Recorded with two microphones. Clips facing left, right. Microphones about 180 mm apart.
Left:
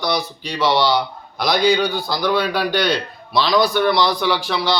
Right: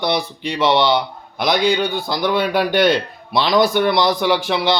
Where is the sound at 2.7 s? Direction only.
50° right (ahead or behind).